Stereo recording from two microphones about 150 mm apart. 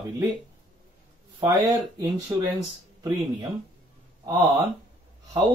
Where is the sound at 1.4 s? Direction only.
25° right (ahead or behind).